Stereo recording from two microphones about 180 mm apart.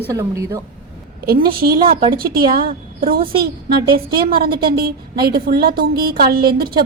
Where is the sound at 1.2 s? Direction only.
55° right (ahead or behind).